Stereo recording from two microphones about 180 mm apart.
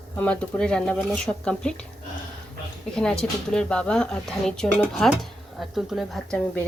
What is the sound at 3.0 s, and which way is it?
Speech, 5° left (ahead or behind).